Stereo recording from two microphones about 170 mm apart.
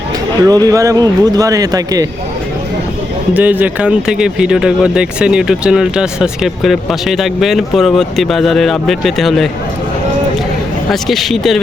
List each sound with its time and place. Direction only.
0.4 s speech: 20° right (ahead or behind)
3.3 s speech: 10° right (ahead or behind)
11.1 s speech: centre (ahead or behind)